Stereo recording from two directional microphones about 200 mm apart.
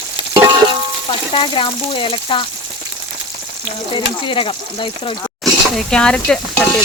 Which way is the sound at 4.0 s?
25° left (ahead or behind).